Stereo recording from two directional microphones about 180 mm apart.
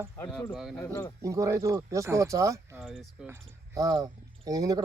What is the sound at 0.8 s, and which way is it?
Speech, 15° left (ahead or behind).